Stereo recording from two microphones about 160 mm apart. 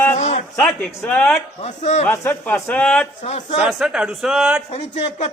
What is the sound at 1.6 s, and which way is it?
Speech, 45° left (ahead or behind).